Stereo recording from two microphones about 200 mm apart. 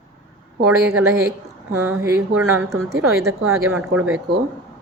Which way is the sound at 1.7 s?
90° right.